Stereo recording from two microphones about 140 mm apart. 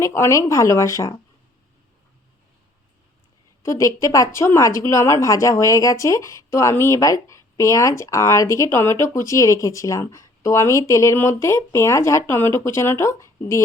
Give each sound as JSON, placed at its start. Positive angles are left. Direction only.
{"t": 0.0, "sound": "speech", "side_deg": 20}
{"t": 3.6, "sound": "speech", "side_deg": 20}